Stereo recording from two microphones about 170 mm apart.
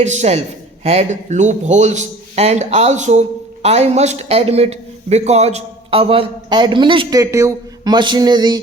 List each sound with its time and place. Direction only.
0.0 s a man's voice: 40° right (ahead or behind); by 8.5 s 25° right (ahead or behind)